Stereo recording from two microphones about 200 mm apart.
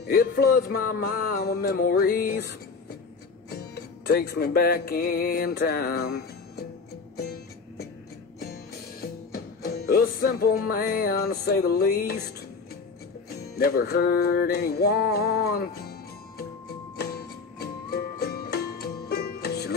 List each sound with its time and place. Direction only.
0.0 s music: 50° left (ahead or behind)
3.7 s music: 55° left (ahead or behind)
9.0 s music: 50° left (ahead or behind)
13.6 s music: 50° left (ahead or behind)
17.6 s music: 50° left (ahead or behind)